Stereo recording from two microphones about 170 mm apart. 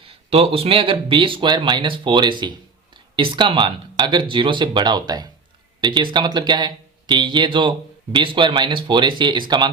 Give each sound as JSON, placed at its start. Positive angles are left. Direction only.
{"t": 0.0, "sound": "speech", "side_deg": -35}